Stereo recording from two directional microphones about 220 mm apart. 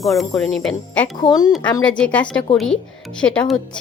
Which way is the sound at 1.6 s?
20° left (ahead or behind).